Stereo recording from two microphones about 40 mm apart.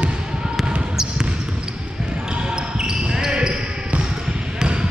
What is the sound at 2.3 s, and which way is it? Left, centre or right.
Basketball bounce, right.